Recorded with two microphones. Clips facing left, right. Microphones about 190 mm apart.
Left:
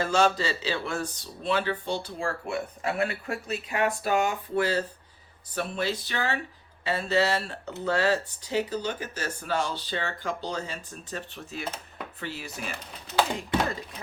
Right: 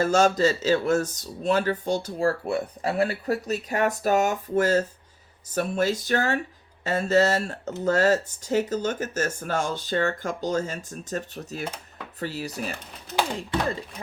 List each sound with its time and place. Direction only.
0.0 s speech: 45° right (ahead or behind)